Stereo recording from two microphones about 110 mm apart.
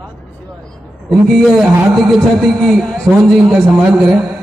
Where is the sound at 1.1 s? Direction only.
Centre (ahead or behind).